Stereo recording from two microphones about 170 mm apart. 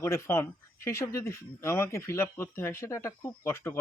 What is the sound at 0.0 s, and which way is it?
Speech, 15° left (ahead or behind).